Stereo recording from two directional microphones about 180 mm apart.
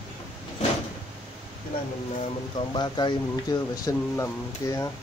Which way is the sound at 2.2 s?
25° left (ahead or behind).